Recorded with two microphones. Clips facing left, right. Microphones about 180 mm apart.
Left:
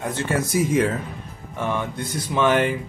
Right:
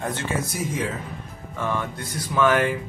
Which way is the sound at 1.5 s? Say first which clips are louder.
Left 2 dB; 20° left (ahead or behind).